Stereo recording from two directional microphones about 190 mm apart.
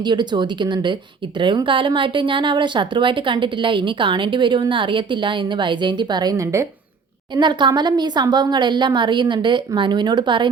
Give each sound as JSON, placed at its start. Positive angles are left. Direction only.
{"t": 0.0, "sound": "speech", "side_deg": -25}